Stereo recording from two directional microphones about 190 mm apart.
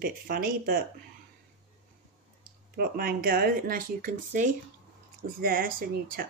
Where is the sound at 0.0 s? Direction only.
50° right (ahead or behind).